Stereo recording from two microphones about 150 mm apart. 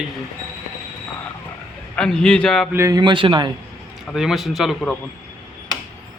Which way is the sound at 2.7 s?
20° right (ahead or behind).